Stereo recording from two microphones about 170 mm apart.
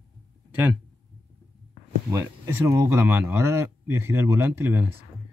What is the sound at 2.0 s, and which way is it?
Speech, 20° right (ahead or behind).